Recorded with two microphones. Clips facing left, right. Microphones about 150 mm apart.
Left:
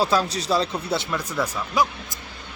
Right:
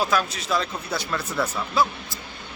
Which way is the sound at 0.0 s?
30° left (ahead or behind).